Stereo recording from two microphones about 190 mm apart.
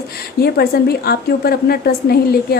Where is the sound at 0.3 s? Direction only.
55° left (ahead or behind).